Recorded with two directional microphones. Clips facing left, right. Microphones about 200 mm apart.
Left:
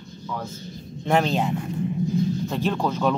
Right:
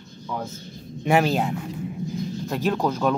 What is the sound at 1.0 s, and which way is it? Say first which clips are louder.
Speech: right 1 dB; 10° right (ahead or behind).